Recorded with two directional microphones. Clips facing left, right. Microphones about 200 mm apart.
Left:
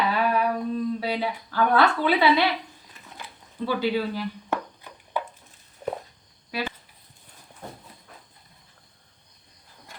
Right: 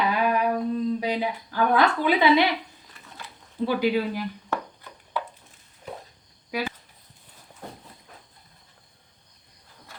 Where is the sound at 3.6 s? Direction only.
15° right (ahead or behind).